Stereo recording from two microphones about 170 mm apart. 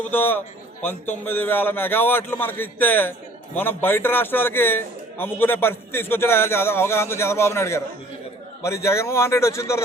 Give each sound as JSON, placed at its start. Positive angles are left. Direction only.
{"t": 0.0, "sound": "a man's voice", "side_deg": 10}